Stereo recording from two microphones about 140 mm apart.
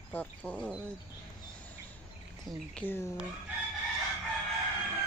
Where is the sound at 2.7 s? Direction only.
15° left (ahead or behind).